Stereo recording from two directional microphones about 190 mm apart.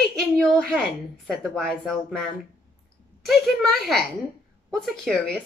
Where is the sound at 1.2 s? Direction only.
Centre (ahead or behind).